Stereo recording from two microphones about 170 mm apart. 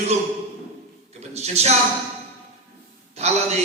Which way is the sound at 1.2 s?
40° right (ahead or behind).